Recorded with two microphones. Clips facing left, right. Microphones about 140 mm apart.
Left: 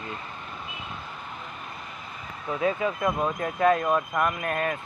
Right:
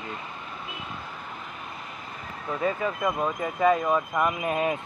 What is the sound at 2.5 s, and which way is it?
Speech, 10° left (ahead or behind).